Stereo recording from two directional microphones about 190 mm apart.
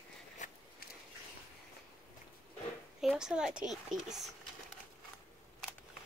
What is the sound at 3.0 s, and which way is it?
Speech, 5° right (ahead or behind).